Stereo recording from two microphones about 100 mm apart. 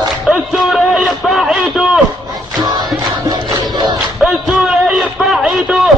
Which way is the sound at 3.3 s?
45° right (ahead or behind).